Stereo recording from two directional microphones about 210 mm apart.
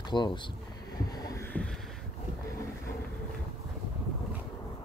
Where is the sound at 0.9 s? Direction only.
20° left (ahead or behind).